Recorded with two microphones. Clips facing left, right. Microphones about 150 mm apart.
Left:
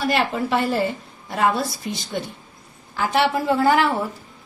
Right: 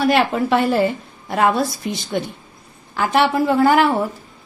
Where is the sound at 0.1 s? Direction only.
70° right (ahead or behind).